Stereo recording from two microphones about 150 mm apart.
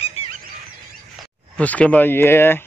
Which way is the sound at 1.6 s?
10° left (ahead or behind).